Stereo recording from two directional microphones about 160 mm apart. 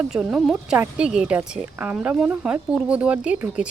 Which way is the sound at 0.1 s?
5° right (ahead or behind).